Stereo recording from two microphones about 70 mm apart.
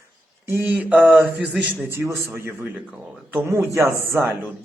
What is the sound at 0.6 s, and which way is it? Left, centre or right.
Speech, right.